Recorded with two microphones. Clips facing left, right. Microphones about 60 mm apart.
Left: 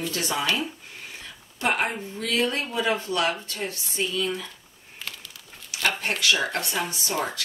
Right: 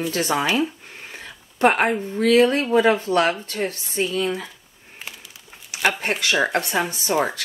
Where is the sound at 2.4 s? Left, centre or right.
Right.